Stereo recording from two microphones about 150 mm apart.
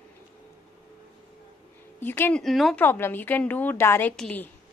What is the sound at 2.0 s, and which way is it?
Speech, 15° left (ahead or behind).